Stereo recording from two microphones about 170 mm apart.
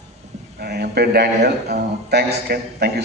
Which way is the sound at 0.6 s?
70° right (ahead or behind).